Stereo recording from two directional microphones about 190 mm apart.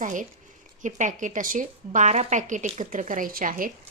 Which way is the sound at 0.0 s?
40° right (ahead or behind).